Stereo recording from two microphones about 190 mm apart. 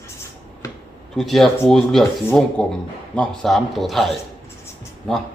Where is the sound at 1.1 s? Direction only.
Centre (ahead or behind).